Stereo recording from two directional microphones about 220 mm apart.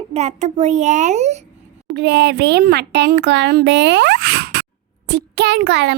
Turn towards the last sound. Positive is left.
turn(degrees=-50)  # may be behind; listen again after turning